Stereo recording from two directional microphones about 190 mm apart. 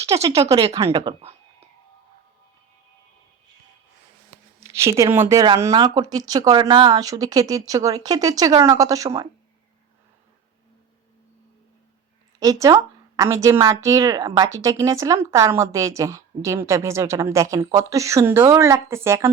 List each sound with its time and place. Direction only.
0.0 s speech: 30° right (ahead or behind)
0.3 s speech: 20° right (ahead or behind)
4.6 s a woman's voice: 15° right (ahead or behind)
12.4 s speech: 20° right (ahead or behind)